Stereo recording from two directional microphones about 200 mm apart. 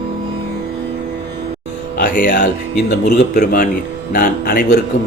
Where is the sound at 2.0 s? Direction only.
40° left (ahead or behind).